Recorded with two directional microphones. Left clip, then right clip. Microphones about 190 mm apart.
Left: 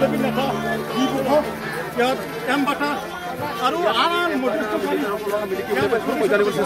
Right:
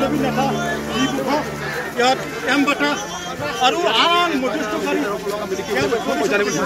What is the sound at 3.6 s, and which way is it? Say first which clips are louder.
Speech: right 3 dB; 60° left (ahead or behind).